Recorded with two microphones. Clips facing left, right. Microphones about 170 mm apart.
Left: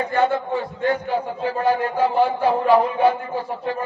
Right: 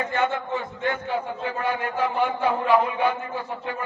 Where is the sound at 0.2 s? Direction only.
35° left (ahead or behind).